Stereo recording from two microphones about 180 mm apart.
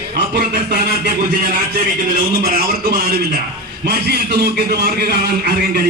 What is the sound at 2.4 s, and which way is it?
A man's voice, 55° right (ahead or behind).